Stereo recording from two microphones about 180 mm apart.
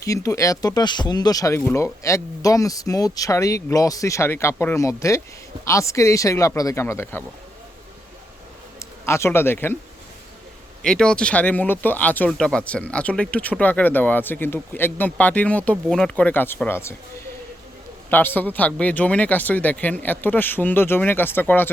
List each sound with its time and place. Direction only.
0.0 s speech: 15° left (ahead or behind)
9.0 s speech: 15° left (ahead or behind)
10.8 s speech: 5° left (ahead or behind)
18.1 s speech: 10° left (ahead or behind)